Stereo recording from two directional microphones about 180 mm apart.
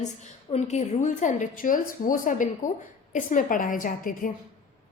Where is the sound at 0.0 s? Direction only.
40° left (ahead or behind).